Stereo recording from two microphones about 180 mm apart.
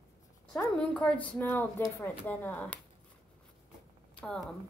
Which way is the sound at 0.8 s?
5° left (ahead or behind).